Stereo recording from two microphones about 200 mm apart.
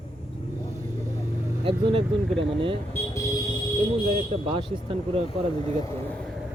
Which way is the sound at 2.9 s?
15° left (ahead or behind).